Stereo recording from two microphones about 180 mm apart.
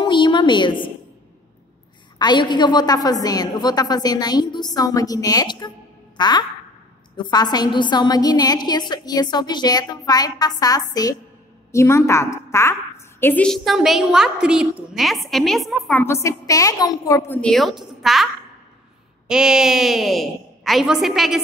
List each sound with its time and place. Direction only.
0.0 s a sound: 25° left (ahead or behind)
2.1 s a woman's voice: 25° left (ahead or behind)
6.1 s a sound: 25° left (ahead or behind)
7.2 s a woman's voice: 25° left (ahead or behind); by 16.0 s centre (ahead or behind)
16.0 s a woman's voice: 15° left (ahead or behind)
17.4 s a woman's voice: centre (ahead or behind)